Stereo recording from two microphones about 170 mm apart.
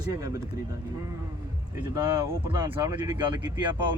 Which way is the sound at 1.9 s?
25° right (ahead or behind).